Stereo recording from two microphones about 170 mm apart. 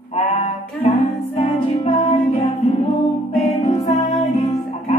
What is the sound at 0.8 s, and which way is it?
Music, 35° left (ahead or behind).